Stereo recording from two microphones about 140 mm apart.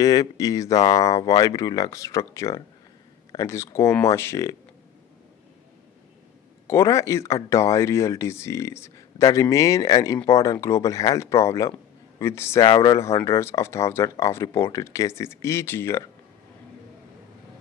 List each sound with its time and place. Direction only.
0.0 s speech: 25° left (ahead or behind)
6.7 s speech: 20° left (ahead or behind)
12.6 s speech: 30° left (ahead or behind)